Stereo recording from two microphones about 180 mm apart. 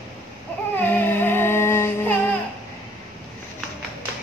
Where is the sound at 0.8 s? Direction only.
10° left (ahead or behind).